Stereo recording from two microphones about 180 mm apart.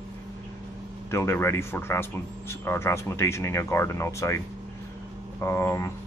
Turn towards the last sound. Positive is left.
turn(degrees=15)  # may be behind; listen again after turning